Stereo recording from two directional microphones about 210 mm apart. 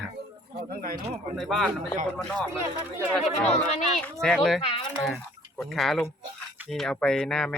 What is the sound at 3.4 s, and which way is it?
Speech, 30° left (ahead or behind).